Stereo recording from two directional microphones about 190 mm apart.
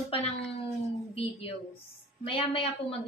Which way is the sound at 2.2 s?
30° left (ahead or behind).